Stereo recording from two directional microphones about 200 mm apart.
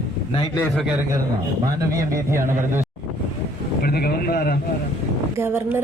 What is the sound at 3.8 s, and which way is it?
Speech, 50° left (ahead or behind).